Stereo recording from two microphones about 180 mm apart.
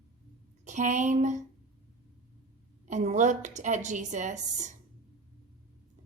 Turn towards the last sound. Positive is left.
turn(degrees=-40)  # may be behind; listen again after turning